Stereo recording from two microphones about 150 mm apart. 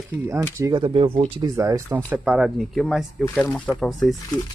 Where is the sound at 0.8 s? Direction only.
40° right (ahead or behind).